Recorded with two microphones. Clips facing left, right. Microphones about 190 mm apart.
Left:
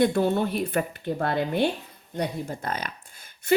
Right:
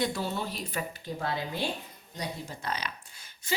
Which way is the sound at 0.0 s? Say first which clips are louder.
Left 9 dB; 55° left (ahead or behind).